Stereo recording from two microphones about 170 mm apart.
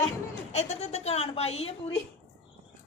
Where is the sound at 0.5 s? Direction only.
40° left (ahead or behind).